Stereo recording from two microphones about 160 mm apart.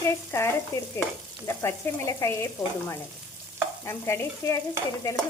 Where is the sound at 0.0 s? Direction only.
15° left (ahead or behind).